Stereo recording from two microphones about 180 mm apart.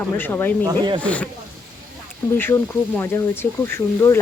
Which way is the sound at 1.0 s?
5° left (ahead or behind).